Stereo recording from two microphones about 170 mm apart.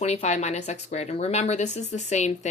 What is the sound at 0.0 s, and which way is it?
Speech, 40° left (ahead or behind).